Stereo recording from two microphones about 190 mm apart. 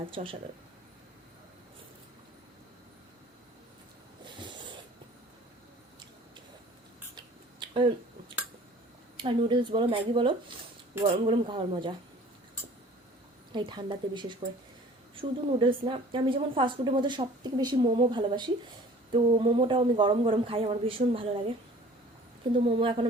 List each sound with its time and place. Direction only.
0.0 s a woman's voice: 30° right (ahead or behind)
7.2 s a sound: 25° right (ahead or behind)
9.1 s a woman's voice: 25° right (ahead or behind)
13.5 s a woman's voice: 25° right (ahead or behind)
22.5 s a woman's voice: 30° right (ahead or behind)